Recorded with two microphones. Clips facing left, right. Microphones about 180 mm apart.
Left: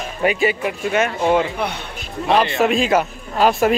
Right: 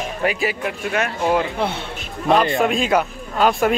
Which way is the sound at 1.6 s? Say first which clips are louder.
Right 1 dB; 25° right (ahead or behind).